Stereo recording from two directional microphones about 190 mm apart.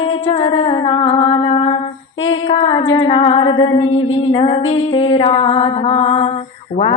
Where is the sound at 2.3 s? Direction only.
25° left (ahead or behind).